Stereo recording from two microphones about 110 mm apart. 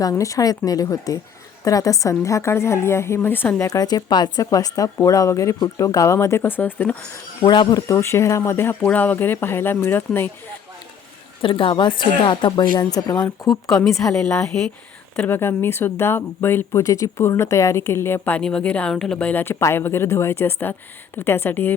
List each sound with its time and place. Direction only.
0.0 s speech: 30° left (ahead or behind)
3.7 s speech: 35° left (ahead or behind); by 6.9 s 15° left (ahead or behind)
7.4 s speech: 45° left (ahead or behind); by 10.3 s 20° left (ahead or behind)
11.4 s a woman's voice: 50° left (ahead or behind)
13.4 s speech: 30° left (ahead or behind)